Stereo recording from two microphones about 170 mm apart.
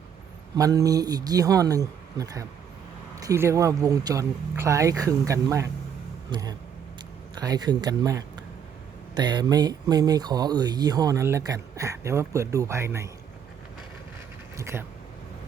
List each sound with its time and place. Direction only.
0.5 s speech: 20° right (ahead or behind)
14.5 s speech: 15° right (ahead or behind)